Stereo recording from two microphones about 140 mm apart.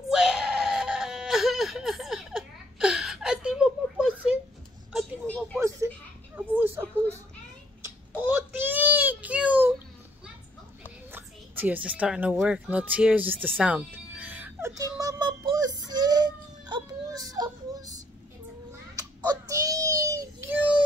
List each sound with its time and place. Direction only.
0.1 s screaming: centre (ahead or behind)
5.2 s a sound: 20° right (ahead or behind)
8.2 s baby cry: 10° right (ahead or behind)
11.1 s speech: 15° right (ahead or behind)
14.8 s child singing: 25° right (ahead or behind)
18.9 s a sound: 25° right (ahead or behind)